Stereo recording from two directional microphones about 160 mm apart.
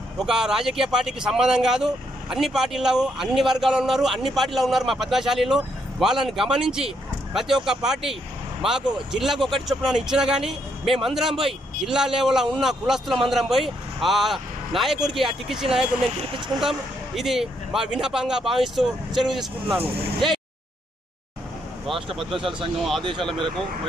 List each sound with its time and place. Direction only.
0.2 s speech: 5° right (ahead or behind)
16.3 s speech: 30° right (ahead or behind)
16.5 s speech: centre (ahead or behind)
22.3 s speech: 30° right (ahead or behind)
22.8 s speech: centre (ahead or behind)